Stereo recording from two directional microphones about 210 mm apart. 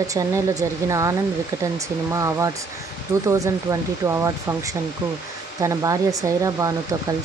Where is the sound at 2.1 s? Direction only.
15° right (ahead or behind).